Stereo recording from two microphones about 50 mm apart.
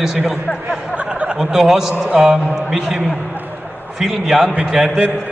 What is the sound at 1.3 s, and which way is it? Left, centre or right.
A man's voice, centre.